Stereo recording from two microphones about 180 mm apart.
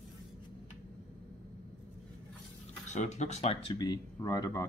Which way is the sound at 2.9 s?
40° left (ahead or behind).